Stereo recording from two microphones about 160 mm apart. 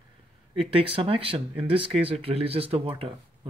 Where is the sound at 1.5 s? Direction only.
5° right (ahead or behind).